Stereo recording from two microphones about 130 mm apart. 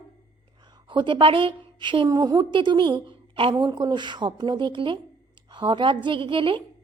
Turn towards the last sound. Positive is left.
turn(degrees=-40)  # may be behind; listen again after turning